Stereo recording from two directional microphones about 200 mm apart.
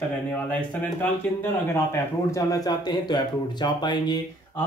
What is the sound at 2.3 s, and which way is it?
Speech, 20° left (ahead or behind).